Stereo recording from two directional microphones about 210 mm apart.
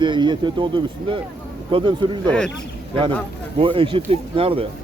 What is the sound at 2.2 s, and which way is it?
Speech, 5° left (ahead or behind).